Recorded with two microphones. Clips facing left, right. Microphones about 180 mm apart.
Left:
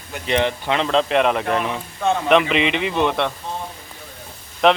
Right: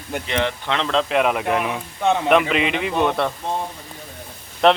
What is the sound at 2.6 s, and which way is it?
Speech, 50° right (ahead or behind).